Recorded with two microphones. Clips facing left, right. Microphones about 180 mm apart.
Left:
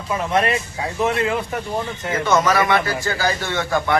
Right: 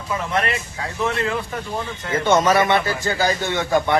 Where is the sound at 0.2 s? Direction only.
20° left (ahead or behind).